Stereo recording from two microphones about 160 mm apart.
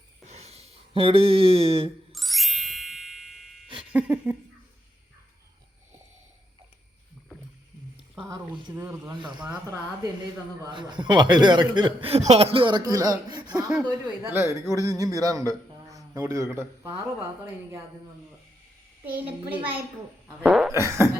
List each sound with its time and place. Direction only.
0.3 s a sound: 40° right (ahead or behind)
2.1 s ding: centre (ahead or behind)
3.9 s a child's voice: 10° right (ahead or behind)
8.3 s speech: 25° right (ahead or behind)
10.6 s speech: 30° right (ahead or behind)
13.5 s a sound: 5° right (ahead or behind)
14.2 s a child's voice: 15° right (ahead or behind)
19.0 s a child's voice: 10° right (ahead or behind)
20.2 s a sound: 5° right (ahead or behind)
20.7 s a child's voice: 15° right (ahead or behind)